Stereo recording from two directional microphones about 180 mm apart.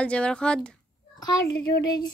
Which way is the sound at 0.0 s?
5° left (ahead or behind).